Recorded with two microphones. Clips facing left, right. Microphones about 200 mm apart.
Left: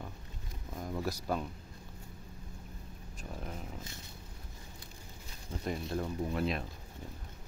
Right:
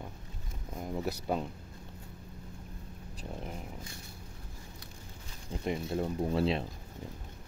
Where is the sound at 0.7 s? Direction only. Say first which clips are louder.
Right 2 dB; 20° right (ahead or behind).